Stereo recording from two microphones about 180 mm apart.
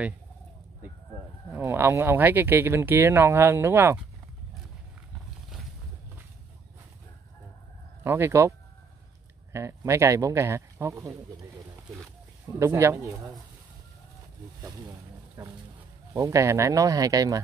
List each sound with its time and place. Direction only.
1.5 s speech: 15° right (ahead or behind)
8.0 s speech: 15° right (ahead or behind)
12.5 s speech: 15° right (ahead or behind)
15.4 s speech: 15° right (ahead or behind)